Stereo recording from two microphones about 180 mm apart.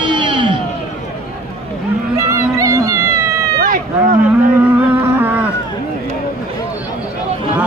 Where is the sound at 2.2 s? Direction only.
15° right (ahead or behind).